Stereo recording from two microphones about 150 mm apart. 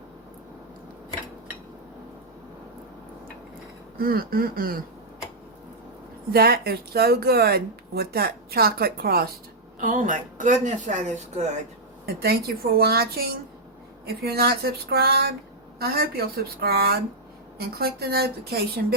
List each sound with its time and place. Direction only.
3.9 s speech: 85° right
6.3 s speech: 90° right
9.8 s speech: 60° right (ahead or behind)
12.0 s speech: 90° right